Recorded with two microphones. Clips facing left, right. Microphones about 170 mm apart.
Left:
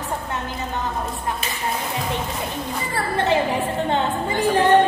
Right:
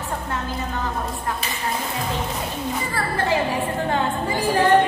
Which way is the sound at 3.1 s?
20° left (ahead or behind).